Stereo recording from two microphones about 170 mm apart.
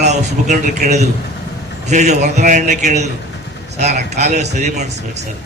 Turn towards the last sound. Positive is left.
turn(degrees=-40)  # may be behind; listen again after turning